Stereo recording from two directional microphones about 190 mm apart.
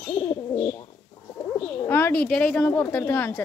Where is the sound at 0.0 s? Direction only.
15° left (ahead or behind).